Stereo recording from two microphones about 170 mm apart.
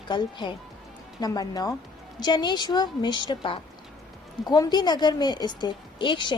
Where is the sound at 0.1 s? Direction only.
30° left (ahead or behind).